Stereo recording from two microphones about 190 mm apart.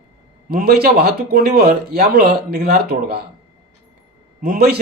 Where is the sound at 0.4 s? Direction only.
50° right (ahead or behind).